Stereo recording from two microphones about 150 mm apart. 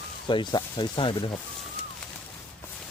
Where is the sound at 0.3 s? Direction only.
30° left (ahead or behind).